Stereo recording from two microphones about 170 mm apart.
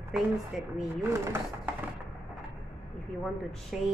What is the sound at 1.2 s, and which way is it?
Speech, 15° right (ahead or behind).